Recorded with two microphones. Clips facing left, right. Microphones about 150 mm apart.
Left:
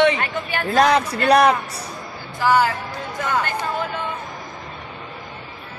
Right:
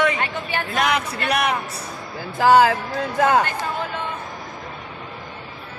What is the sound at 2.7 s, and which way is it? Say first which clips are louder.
Speech: right 4 dB; 70° right (ahead or behind).